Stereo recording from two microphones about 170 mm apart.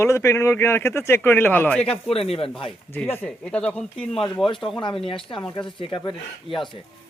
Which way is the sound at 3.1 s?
10° left (ahead or behind).